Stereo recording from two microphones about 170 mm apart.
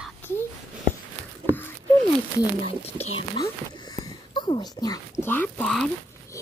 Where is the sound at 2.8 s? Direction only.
35° left (ahead or behind).